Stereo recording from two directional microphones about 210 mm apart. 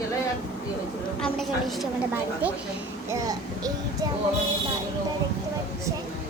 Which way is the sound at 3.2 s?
15° right (ahead or behind).